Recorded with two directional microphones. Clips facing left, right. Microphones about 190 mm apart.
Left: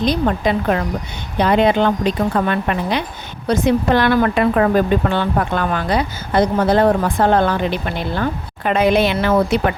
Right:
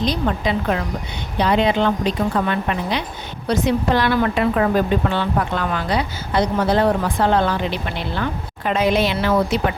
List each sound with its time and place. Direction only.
0.0 s speech: 50° left (ahead or behind)